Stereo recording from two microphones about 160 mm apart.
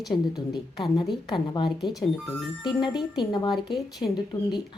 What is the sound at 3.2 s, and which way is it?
Speech, 25° left (ahead or behind).